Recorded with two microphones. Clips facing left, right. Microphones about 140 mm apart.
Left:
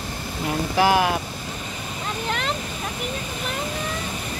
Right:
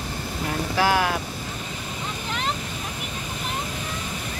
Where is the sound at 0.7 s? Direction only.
15° left (ahead or behind).